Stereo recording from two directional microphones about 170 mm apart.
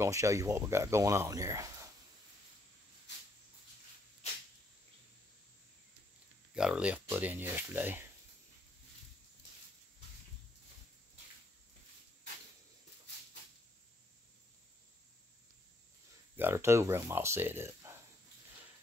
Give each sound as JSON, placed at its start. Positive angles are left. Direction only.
{"t": 0.0, "sound": "speech", "side_deg": -20}
{"t": 6.5, "sound": "speech", "side_deg": -5}
{"t": 16.3, "sound": "speech", "side_deg": -15}